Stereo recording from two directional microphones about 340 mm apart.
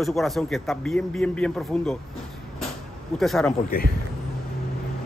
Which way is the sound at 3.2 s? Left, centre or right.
Centre.